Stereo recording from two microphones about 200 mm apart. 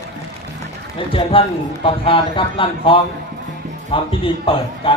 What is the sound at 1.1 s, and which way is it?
A man's voice, 25° left (ahead or behind).